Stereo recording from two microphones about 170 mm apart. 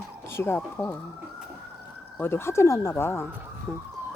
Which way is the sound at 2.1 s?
15° left (ahead or behind).